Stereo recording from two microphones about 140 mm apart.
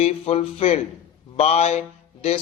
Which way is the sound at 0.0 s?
45° left (ahead or behind).